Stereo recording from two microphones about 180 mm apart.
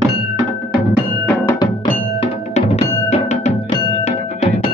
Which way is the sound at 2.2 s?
35° left (ahead or behind).